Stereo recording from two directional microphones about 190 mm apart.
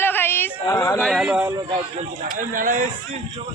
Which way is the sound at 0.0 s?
10° left (ahead or behind).